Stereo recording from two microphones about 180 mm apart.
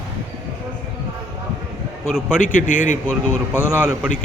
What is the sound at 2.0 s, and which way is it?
Speech, centre (ahead or behind).